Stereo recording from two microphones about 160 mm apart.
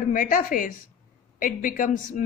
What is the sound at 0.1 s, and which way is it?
A woman's voice, 60° left (ahead or behind).